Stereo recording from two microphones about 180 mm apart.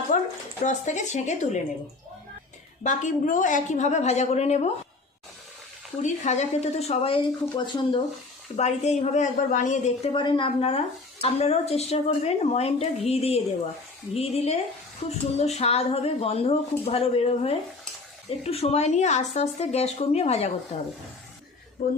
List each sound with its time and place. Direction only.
0.1 s a sound: 45° left (ahead or behind)
0.6 s speech: 40° left (ahead or behind)
2.8 s speech: 45° left (ahead or behind)
6.0 s speech: 40° left (ahead or behind)
21.8 s speech: 50° left (ahead or behind)